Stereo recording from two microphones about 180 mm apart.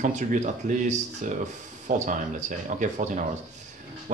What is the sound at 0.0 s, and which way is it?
Speech, 45° right (ahead or behind).